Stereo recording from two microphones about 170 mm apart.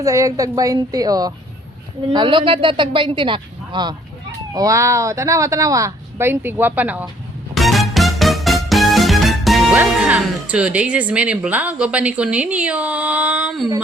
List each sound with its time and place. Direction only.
0.0 s a woman's voice: 20° right (ahead or behind)
7.5 s music: centre (ahead or behind)
9.7 s speech: 5° right (ahead or behind)